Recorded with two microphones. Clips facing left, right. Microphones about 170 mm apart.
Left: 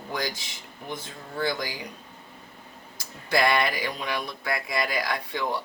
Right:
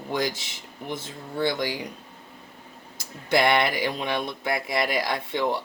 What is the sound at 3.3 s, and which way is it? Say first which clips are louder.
Speech: right 2 dB; 25° right (ahead or behind).